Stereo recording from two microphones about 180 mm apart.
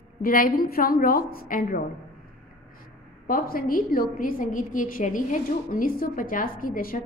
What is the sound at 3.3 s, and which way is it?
A woman's voice, 50° left (ahead or behind).